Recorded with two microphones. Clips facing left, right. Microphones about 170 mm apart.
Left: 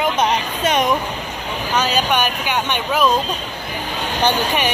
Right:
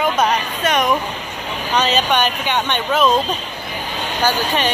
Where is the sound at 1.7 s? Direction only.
10° left (ahead or behind).